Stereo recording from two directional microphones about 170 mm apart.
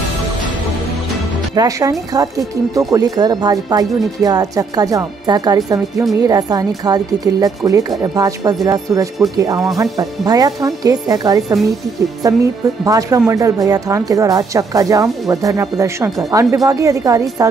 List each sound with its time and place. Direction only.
1.5 s speech: 20° right (ahead or behind)